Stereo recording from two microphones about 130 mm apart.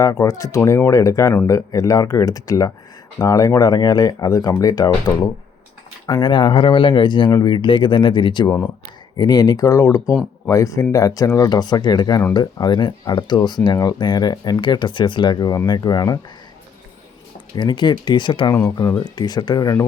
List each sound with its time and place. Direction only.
0.0 s speech: 30° left (ahead or behind)
6.2 s speech: 40° left (ahead or behind)
8.4 s speech: 15° left (ahead or behind)
9.1 s speech: 30° left (ahead or behind)
17.5 s speech: 35° left (ahead or behind)
18.5 s speech: 25° left (ahead or behind)